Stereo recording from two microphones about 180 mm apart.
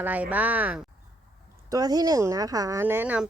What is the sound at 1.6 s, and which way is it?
Speech, 20° right (ahead or behind).